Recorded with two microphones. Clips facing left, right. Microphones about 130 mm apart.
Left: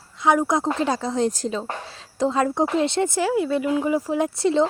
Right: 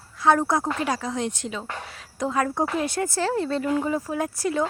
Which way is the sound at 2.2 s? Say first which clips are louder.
Left 4 dB; 25° left (ahead or behind).